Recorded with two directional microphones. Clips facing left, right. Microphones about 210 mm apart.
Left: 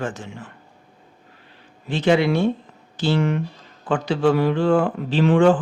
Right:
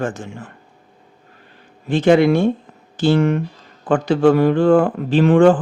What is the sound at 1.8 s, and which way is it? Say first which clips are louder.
Speech: right 5 dB; 50° right (ahead or behind).